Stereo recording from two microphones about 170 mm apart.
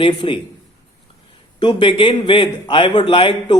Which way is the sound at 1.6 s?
30° left (ahead or behind).